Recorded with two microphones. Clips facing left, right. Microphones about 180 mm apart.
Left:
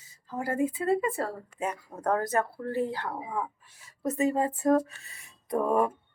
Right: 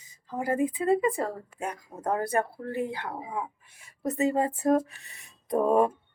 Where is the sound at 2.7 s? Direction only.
20° right (ahead or behind).